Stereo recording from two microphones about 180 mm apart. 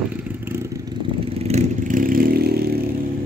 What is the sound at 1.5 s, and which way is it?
Vehicle, 50° right (ahead or behind).